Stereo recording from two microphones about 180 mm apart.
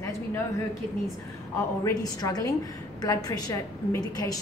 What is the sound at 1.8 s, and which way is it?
A woman's voice, 20° left (ahead or behind).